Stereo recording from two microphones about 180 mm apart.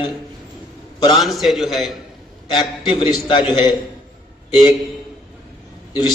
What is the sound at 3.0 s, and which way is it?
Speech, 25° left (ahead or behind).